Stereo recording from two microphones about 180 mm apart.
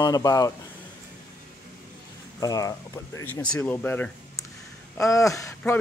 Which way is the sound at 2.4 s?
20° left (ahead or behind).